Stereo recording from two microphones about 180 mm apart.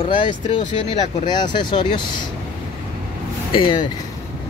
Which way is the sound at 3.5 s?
25° left (ahead or behind).